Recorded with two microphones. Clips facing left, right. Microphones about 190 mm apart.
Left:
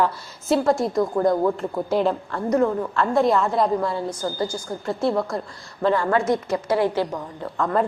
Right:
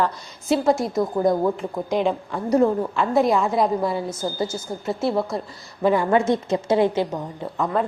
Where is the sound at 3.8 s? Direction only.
15° right (ahead or behind).